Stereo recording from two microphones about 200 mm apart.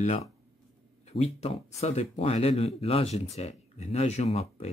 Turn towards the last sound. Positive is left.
turn(degrees=30)  # may be behind; listen again after turning